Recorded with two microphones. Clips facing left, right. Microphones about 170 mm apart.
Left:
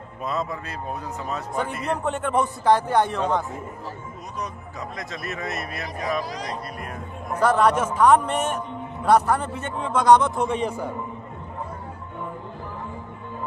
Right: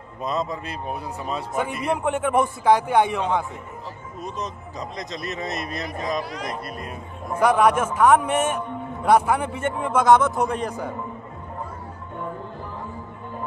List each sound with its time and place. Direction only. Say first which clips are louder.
0.2 s a man's voice: right 2 dB; 15° right (ahead or behind)
4.9 s a man's voice: right 2 dB; 20° right (ahead or behind)
7.3 s a man's voice: right 1 dB; 10° right (ahead or behind)